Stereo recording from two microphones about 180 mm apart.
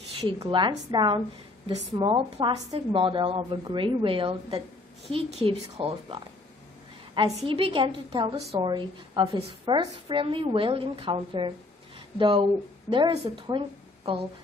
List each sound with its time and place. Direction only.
0.4 s a woman's voice: 25° right (ahead or behind)
7.2 s a woman's voice: 20° right (ahead or behind)
7.5 s a woman's voice: 30° right (ahead or behind)